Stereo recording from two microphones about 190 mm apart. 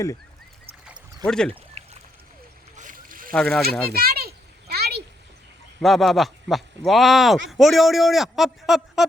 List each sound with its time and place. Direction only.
1.2 s a man's voice: 5° left (ahead or behind)
1.5 s pour: 35° right (ahead or behind)
2.7 s boat: 45° right (ahead or behind)
3.3 s a man's voice: centre (ahead or behind)
3.9 s a sound: 55° right (ahead or behind)
5.8 s a man's voice: centre (ahead or behind)